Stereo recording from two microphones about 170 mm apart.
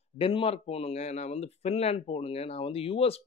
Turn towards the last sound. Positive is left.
turn(degrees=35)  # may be behind; listen again after turning